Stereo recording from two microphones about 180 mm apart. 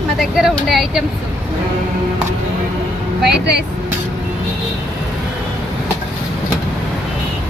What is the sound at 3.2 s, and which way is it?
Speech, 70° right (ahead or behind).